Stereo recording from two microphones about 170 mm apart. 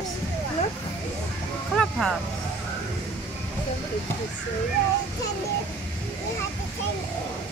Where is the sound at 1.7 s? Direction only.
Centre (ahead or behind).